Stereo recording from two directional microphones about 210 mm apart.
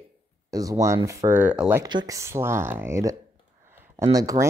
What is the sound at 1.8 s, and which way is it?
Speech, 20° right (ahead or behind).